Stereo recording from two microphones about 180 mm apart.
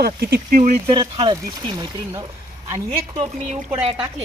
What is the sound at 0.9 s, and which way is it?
Speech, 25° right (ahead or behind).